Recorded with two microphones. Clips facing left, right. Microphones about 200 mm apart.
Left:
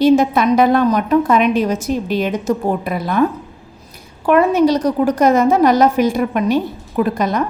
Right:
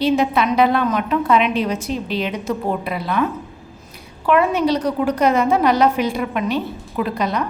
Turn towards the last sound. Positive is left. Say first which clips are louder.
# left 4 dB
turn(degrees=45)  # may be behind; listen again after turning